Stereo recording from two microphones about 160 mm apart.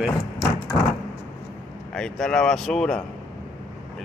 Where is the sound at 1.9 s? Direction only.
5° left (ahead or behind).